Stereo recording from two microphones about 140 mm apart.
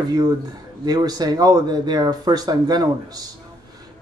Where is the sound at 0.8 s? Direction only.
30° right (ahead or behind).